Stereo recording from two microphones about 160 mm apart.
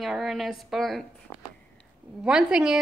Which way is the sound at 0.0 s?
Centre (ahead or behind).